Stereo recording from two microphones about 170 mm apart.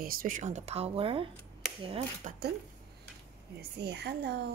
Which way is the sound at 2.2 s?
50° right (ahead or behind).